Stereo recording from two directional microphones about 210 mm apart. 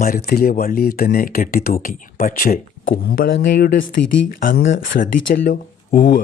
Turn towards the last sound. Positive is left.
turn(degrees=40)  # may be behind; listen again after turning